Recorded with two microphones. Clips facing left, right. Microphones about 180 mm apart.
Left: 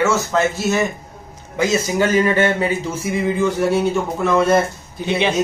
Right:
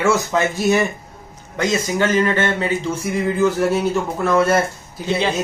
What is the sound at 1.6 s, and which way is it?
A man's voice, 10° left (ahead or behind).